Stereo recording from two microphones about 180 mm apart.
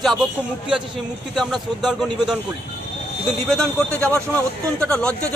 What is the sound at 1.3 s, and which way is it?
Speech, centre (ahead or behind).